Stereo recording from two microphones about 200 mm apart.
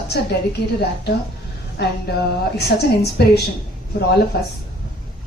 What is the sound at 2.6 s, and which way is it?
Speech, 55° left (ahead or behind).